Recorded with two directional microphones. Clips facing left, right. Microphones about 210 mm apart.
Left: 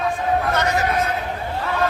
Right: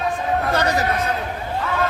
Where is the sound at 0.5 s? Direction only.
35° right (ahead or behind).